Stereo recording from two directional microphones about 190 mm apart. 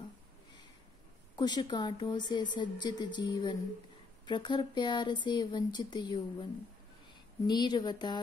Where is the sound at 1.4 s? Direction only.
20° left (ahead or behind).